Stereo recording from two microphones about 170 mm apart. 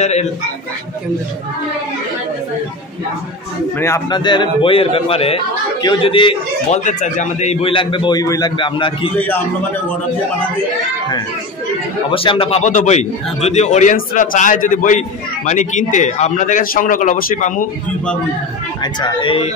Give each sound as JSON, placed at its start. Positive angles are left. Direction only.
{"t": 0.0, "sound": "speech", "side_deg": 40}
{"t": 3.8, "sound": "a man's voice", "side_deg": 20}
{"t": 6.7, "sound": "a man's voice", "side_deg": 45}
{"t": 7.7, "sound": "a man's voice", "side_deg": 30}
{"t": 12.1, "sound": "a man's voice", "side_deg": 30}
{"t": 18.8, "sound": "a man's voice", "side_deg": 25}